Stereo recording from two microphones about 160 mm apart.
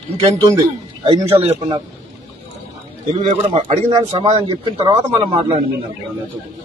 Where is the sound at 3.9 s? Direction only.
20° right (ahead or behind).